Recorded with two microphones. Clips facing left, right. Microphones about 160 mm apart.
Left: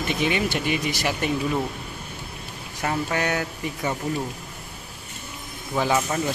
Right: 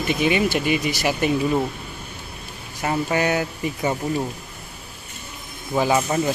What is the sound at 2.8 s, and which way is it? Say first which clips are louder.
Speech: right 4 dB; 10° right (ahead or behind).